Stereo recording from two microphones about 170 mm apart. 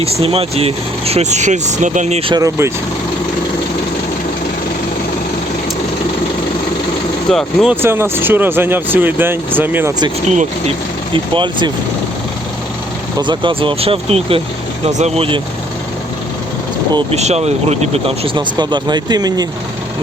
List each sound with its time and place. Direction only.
0.0 s speech: 35° right (ahead or behind)
2.3 s speech: 15° right (ahead or behind)
7.3 s speech: centre (ahead or behind)
7.8 s speech: 15° right (ahead or behind)
11.1 s speech: 30° right (ahead or behind)
13.1 s speech: 25° right (ahead or behind)
16.9 s speech: 40° right (ahead or behind); by 19.5 s 25° right (ahead or behind)